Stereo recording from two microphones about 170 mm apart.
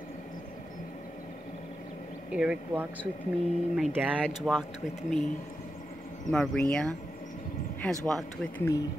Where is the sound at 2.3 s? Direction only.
5° right (ahead or behind).